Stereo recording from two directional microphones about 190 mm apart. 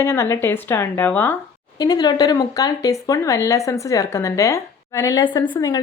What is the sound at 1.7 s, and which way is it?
A woman's voice, 20° left (ahead or behind).